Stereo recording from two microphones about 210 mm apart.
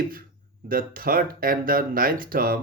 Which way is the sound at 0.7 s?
45° right (ahead or behind).